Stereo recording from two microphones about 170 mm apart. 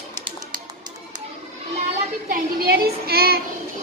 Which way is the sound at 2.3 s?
65° right (ahead or behind).